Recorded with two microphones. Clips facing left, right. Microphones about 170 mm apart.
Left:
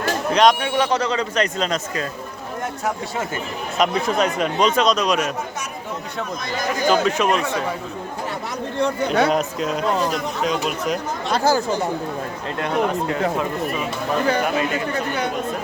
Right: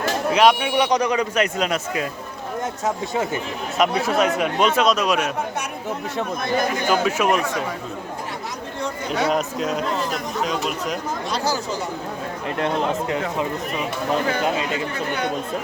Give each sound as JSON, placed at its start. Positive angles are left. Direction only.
{"t": 0.3, "sound": "speech", "side_deg": -10}
{"t": 3.8, "sound": "speech", "side_deg": -5}
{"t": 6.9, "sound": "speech", "side_deg": -10}
{"t": 7.3, "sound": "speech", "side_deg": 25}
{"t": 8.8, "sound": "speech", "side_deg": 60}
{"t": 9.3, "sound": "speech", "side_deg": 0}
{"t": 11.3, "sound": "speech", "side_deg": 50}
{"t": 12.5, "sound": "speech", "side_deg": -20}